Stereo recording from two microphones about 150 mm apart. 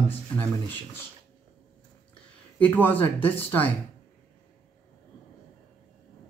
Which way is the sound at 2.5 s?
10° left (ahead or behind).